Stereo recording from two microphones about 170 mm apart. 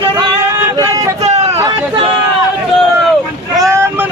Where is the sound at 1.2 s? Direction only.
40° right (ahead or behind).